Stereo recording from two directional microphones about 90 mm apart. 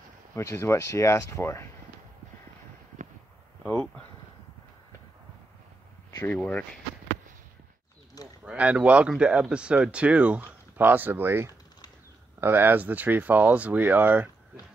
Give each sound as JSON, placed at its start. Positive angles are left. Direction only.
{"t": 0.3, "sound": "speech", "side_deg": 30}
{"t": 3.6, "sound": "speech", "side_deg": 15}
{"t": 6.2, "sound": "speech", "side_deg": 15}
{"t": 8.5, "sound": "speech", "side_deg": -15}